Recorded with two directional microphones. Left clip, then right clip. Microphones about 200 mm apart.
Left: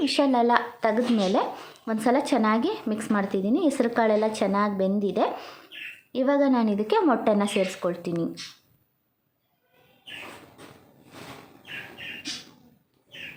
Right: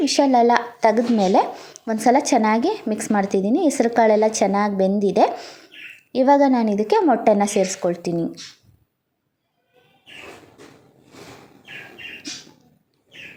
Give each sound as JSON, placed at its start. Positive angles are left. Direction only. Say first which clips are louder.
{"t": 0.0, "sound": "a woman's voice", "louder": "right 6 dB", "side_deg": -20}
{"t": 5.4, "sound": "bird", "louder": "right 4 dB", "side_deg": -10}
{"t": 6.1, "sound": "a woman's voice", "louder": "right 7 dB", "side_deg": -25}
{"t": 7.5, "sound": "a woman's voice", "louder": "right 5 dB", "side_deg": 0}
{"t": 7.8, "sound": "a woman's voice", "louder": "right 6 dB", "side_deg": -20}